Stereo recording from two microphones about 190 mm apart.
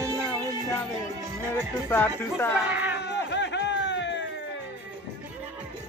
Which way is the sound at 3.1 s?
65° left (ahead or behind).